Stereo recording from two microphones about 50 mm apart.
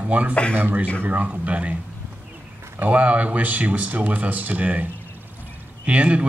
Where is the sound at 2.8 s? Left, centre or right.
Right.